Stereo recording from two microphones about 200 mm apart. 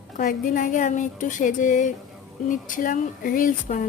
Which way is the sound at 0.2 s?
45° left (ahead or behind).